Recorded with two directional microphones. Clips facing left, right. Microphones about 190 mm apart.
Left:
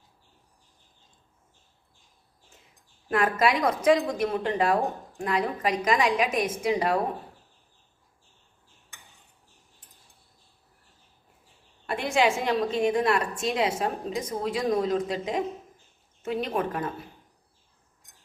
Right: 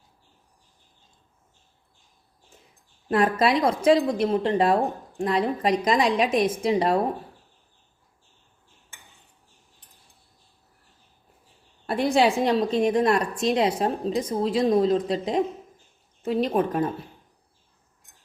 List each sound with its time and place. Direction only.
3.1 s a woman's voice: 35° right (ahead or behind)
11.9 s a woman's voice: 35° right (ahead or behind)